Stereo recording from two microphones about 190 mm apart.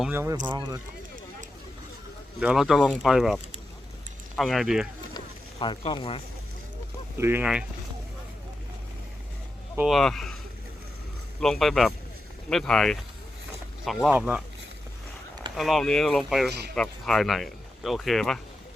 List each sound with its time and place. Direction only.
0.0 s speech: 10° right (ahead or behind)
2.4 s speech: 5° right (ahead or behind)
5.1 s a sound: 25° left (ahead or behind)
7.2 s speech: 10° right (ahead or behind)
9.7 s speech: centre (ahead or behind)
11.3 s speech: centre (ahead or behind)
15.5 s speech: centre (ahead or behind)
16.5 s speech: 60° right (ahead or behind)
16.7 s speech: 5° left (ahead or behind)